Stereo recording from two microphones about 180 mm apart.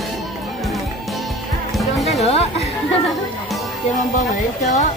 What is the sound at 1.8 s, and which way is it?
Music, centre (ahead or behind).